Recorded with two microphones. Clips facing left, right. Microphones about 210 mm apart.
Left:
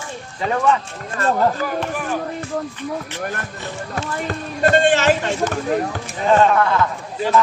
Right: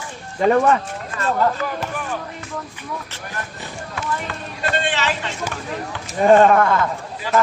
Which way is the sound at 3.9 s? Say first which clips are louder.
Left 2 dB; 45° left (ahead or behind).